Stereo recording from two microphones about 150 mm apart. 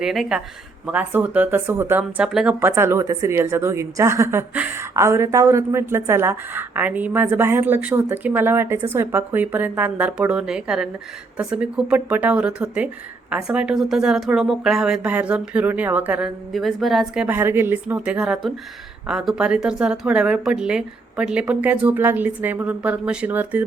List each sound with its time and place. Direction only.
0.0 s a woman's voice: centre (ahead or behind)
16.5 s speech: centre (ahead or behind)
17.2 s a woman's voice: 15° right (ahead or behind)